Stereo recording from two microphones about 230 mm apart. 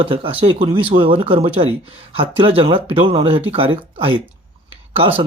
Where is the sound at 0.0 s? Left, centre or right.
Right.